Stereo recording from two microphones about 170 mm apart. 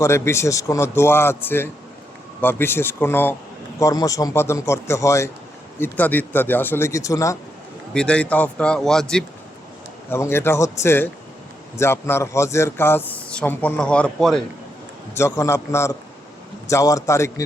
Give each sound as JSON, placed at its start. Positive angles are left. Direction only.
{"t": 0.0, "sound": "speech", "side_deg": 15}
{"t": 7.9, "sound": "speech", "side_deg": 5}
{"t": 10.1, "sound": "speech", "side_deg": 15}
{"t": 15.1, "sound": "speech", "side_deg": 15}